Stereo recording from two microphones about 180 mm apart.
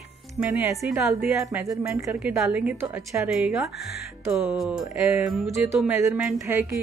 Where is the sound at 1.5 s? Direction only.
15° right (ahead or behind).